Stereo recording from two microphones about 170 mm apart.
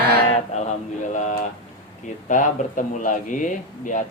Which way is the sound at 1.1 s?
45° left (ahead or behind).